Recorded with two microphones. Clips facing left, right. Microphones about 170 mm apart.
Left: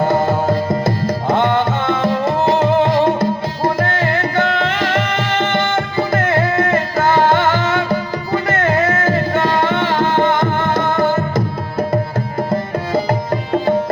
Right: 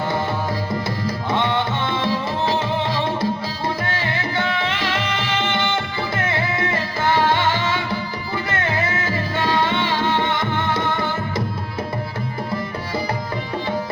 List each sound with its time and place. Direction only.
0.0 s music: 45° left (ahead or behind)
0.4 s music: 60° left (ahead or behind)